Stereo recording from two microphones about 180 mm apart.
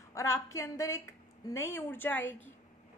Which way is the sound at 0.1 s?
15° left (ahead or behind).